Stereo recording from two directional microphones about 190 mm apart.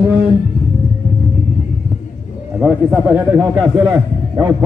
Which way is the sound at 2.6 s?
10° right (ahead or behind).